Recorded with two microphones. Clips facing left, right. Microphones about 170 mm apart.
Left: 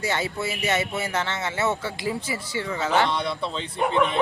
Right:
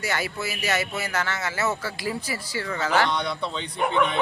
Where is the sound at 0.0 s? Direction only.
25° left (ahead or behind).